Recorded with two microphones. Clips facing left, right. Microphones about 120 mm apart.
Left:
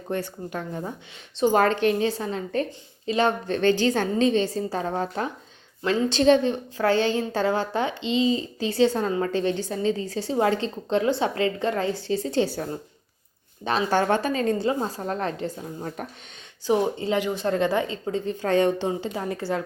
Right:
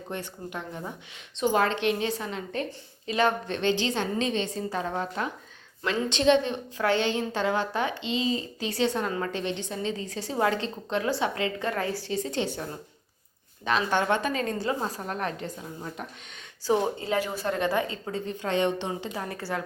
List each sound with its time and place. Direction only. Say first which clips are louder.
0.1 s a woman's voice: left 7 dB; 40° left (ahead or behind)
13.7 s a woman's voice: left 3 dB; 35° left (ahead or behind)
16.0 s a woman's voice: left 4 dB; 50° left (ahead or behind)
16.6 s speech: left 3 dB; 20° left (ahead or behind)
18.4 s a woman's voice: left 5 dB; 40° left (ahead or behind)
18.9 s speech: left 5 dB; 25° left (ahead or behind)